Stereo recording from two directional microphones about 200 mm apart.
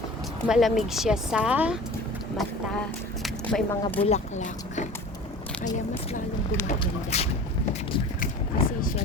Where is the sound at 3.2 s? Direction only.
5° left (ahead or behind).